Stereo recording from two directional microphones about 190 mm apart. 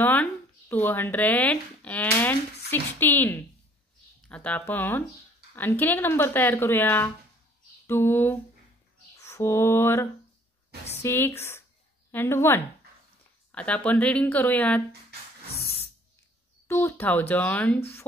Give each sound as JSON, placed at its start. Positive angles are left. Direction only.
{"t": 0.0, "sound": "speech", "side_deg": 10}
{"t": 7.8, "sound": "a sound", "side_deg": 15}
{"t": 9.1, "sound": "mantra", "side_deg": 15}
{"t": 10.9, "sound": "a woman's voice", "side_deg": 15}
{"t": 16.6, "sound": "speech", "side_deg": 15}